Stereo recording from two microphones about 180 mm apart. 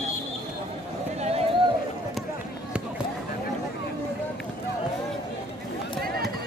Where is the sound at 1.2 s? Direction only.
35° right (ahead or behind).